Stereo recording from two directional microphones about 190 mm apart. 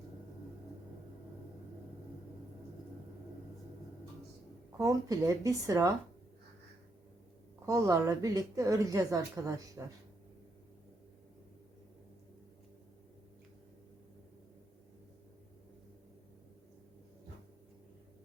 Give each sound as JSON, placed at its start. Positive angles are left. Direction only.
{"t": 4.8, "sound": "a woman's voice", "side_deg": -15}
{"t": 7.6, "sound": "a woman's voice", "side_deg": -15}